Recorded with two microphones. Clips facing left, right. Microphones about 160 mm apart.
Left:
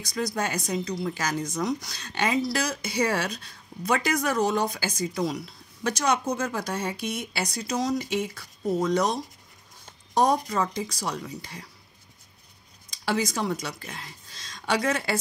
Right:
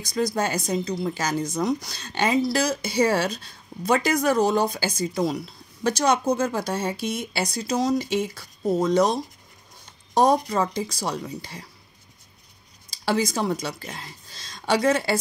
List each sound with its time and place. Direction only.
0.1 s speech: 30° right (ahead or behind)
12.9 s speech: 30° right (ahead or behind)